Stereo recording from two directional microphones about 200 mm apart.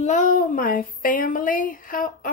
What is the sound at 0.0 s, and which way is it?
Speech, 40° left (ahead or behind).